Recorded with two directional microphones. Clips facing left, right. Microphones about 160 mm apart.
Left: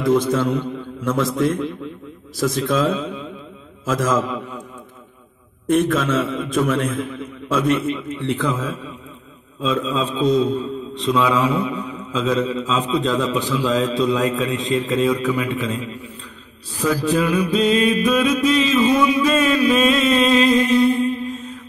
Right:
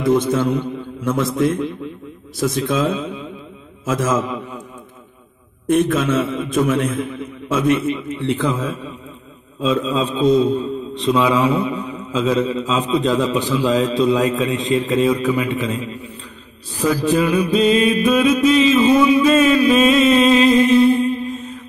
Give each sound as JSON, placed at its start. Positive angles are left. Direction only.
{"t": 0.0, "sound": "a man's voice", "side_deg": -20}
{"t": 2.7, "sound": "a man's voice", "side_deg": -10}
{"t": 4.0, "sound": "a man's voice", "side_deg": -20}
{"t": 5.9, "sound": "a man's voice", "side_deg": -15}
{"t": 8.2, "sound": "a man's voice", "side_deg": -25}
{"t": 16.8, "sound": "a man's voice", "side_deg": -20}